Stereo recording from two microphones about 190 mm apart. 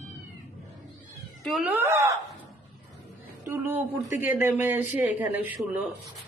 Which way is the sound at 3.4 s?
10° right (ahead or behind).